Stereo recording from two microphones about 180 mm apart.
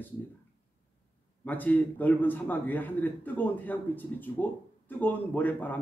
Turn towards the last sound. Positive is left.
turn(degrees=10)  # may be behind; listen again after turning